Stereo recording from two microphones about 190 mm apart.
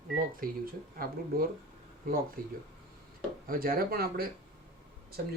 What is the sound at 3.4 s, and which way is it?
Speech, 50° right (ahead or behind).